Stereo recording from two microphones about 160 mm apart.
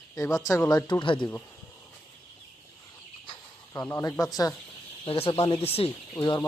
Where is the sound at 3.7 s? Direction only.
15° left (ahead or behind).